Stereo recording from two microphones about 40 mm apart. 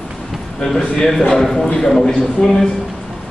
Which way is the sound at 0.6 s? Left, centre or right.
Left.